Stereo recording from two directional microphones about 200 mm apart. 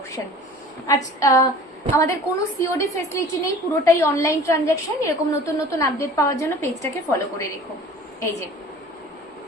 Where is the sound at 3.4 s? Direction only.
15° left (ahead or behind).